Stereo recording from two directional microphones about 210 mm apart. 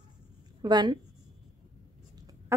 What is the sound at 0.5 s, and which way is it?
Speech, 20° right (ahead or behind).